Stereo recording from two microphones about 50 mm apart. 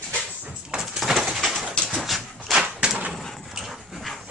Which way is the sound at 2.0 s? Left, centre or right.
Centre.